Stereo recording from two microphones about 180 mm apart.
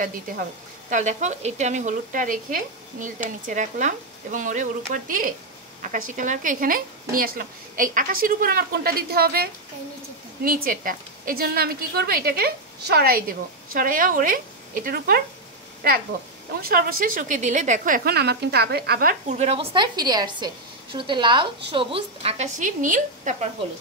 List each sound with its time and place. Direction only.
0.8 s a woman's voice: 45° right (ahead or behind)
16.6 s a woman's voice: 50° right (ahead or behind)
19.4 s a woman's voice: 35° right (ahead or behind)
22.6 s a woman's voice: 45° right (ahead or behind)